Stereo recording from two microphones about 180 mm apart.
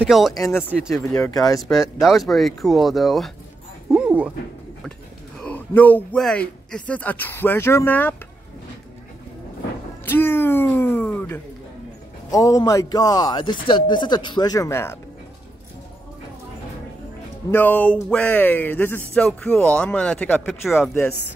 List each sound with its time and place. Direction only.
0.0 s speech: centre (ahead or behind)
0.4 s speech: 15° left (ahead or behind)
0.7 s speech: centre (ahead or behind)
1.4 s a man's voice: 20° left (ahead or behind)
1.7 s speech: centre (ahead or behind)
3.9 s dog: 5° right (ahead or behind)
5.4 s speech: 10° left (ahead or behind)
10.0 s a man's voice: 10° left (ahead or behind)
17.5 s speech: 10° left (ahead or behind)